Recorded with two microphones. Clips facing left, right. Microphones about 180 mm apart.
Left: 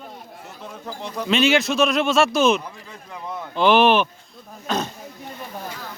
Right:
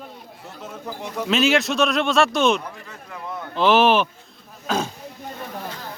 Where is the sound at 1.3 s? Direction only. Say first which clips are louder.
Left 1 dB; centre (ahead or behind).